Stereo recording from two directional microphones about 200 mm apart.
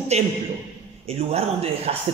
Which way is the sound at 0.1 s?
30° right (ahead or behind).